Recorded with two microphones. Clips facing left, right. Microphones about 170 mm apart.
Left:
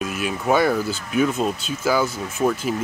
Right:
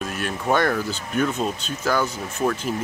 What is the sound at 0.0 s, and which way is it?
Speech, 5° left (ahead or behind).